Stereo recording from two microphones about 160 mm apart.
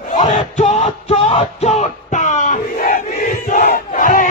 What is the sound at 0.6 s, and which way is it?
Music, 45° left (ahead or behind).